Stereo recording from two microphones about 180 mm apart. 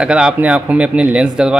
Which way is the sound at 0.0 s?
5° right (ahead or behind).